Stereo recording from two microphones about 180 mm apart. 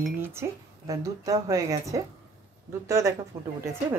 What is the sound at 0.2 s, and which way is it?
A woman's voice, 15° right (ahead or behind).